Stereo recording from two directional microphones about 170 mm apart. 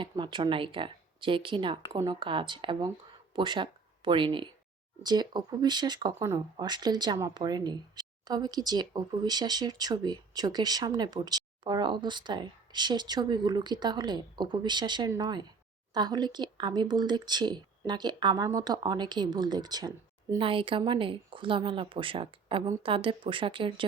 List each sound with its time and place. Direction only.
0.0 s speech: 30° right (ahead or behind)